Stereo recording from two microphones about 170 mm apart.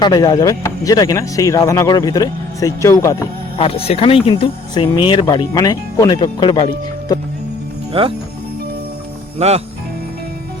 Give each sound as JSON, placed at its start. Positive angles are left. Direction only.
{"t": 0.0, "sound": "speech", "side_deg": 25}
{"t": 3.6, "sound": "speech", "side_deg": 35}
{"t": 8.0, "sound": "speech", "side_deg": -35}
{"t": 9.4, "sound": "speech", "side_deg": -40}